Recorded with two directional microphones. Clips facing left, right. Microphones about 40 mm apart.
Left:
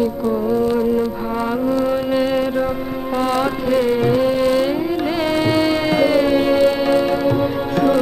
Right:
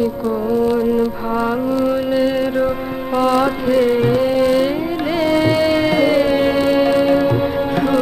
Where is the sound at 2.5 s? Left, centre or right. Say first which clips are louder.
Right 2 dB; centre.